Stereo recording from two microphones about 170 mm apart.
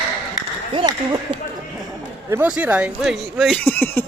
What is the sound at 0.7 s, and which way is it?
Speech, 25° right (ahead or behind).